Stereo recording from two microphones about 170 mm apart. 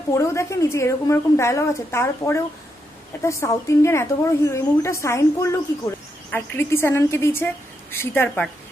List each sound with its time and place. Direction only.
0.1 s a woman's voice: 15° left (ahead or behind)